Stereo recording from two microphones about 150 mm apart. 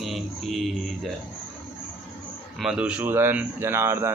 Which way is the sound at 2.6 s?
5° right (ahead or behind).